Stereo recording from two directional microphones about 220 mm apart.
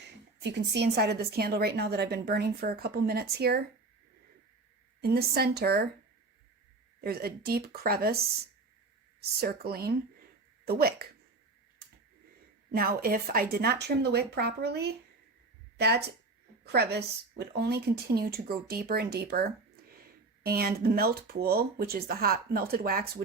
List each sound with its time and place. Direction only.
0.0 s a woman's voice: 50° right (ahead or behind)
4.9 s a woman's voice: 45° right (ahead or behind)
7.0 s a woman's voice: 45° right (ahead or behind)
9.4 s a woman's voice: 45° right (ahead or behind)
12.7 s a woman's voice: 40° right (ahead or behind)